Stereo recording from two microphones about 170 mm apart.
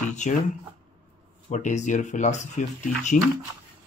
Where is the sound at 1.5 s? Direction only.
45° left (ahead or behind).